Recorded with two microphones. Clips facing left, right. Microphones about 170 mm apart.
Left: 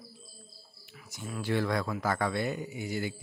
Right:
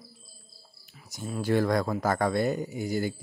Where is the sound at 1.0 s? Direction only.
35° right (ahead or behind).